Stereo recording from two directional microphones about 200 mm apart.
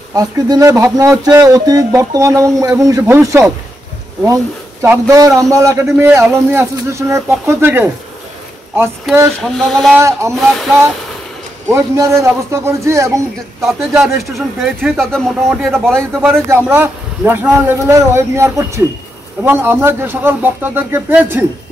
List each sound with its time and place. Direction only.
0.1 s speech: 20° right (ahead or behind)
4.8 s speech: 15° right (ahead or behind)
9.1 s a man's voice: centre (ahead or behind)
9.9 s speech: 15° right (ahead or behind)
11.7 s speech: 15° right (ahead or behind)
13.6 s a man's voice: centre (ahead or behind)
16.2 s speech: 10° right (ahead or behind)